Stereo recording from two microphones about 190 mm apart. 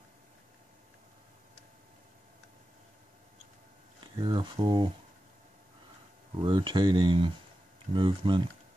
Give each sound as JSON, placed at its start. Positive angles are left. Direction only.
{"t": 4.0, "sound": "speech", "side_deg": -25}
{"t": 6.4, "sound": "speech", "side_deg": -25}